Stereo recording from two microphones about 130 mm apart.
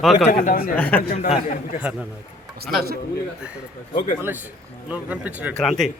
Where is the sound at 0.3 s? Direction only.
90° left.